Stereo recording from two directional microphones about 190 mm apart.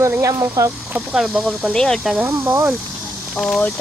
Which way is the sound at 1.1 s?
5° right (ahead or behind).